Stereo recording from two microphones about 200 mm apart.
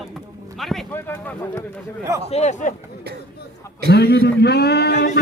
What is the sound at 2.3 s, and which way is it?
Speech, 35° left (ahead or behind).